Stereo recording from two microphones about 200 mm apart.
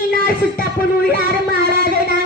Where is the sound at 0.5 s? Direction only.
50° left (ahead or behind).